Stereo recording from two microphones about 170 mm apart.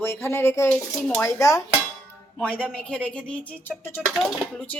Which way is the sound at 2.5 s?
5° left (ahead or behind).